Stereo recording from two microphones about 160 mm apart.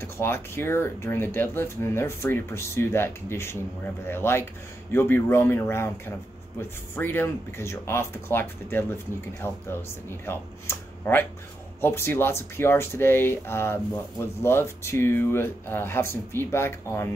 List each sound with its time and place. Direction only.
0.0 s speech: 15° left (ahead or behind)